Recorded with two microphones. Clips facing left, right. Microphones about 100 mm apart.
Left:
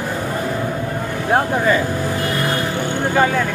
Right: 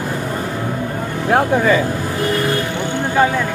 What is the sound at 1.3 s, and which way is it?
Speech, 65° right (ahead or behind).